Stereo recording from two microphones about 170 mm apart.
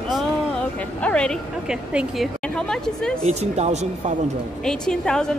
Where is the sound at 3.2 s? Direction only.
40° right (ahead or behind).